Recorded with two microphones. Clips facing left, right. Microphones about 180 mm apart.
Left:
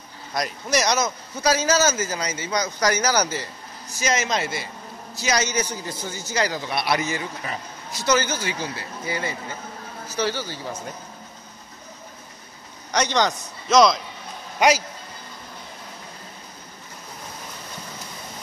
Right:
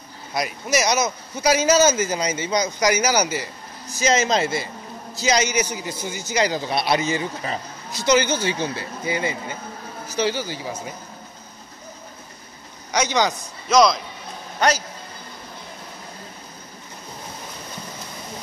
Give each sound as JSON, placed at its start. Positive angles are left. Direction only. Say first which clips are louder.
{"t": 0.3, "sound": "speech", "louder": "right 1 dB", "side_deg": -10}
{"t": 4.0, "sound": "a man's voice", "louder": "right 4 dB", "side_deg": -25}
{"t": 12.9, "sound": "a man's voice", "louder": "right 1 dB", "side_deg": -5}